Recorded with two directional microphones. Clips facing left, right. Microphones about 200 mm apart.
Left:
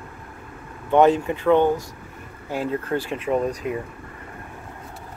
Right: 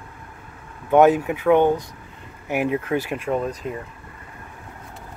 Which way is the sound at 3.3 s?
5° left (ahead or behind).